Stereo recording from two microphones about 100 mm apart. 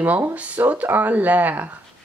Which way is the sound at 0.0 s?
15° right (ahead or behind).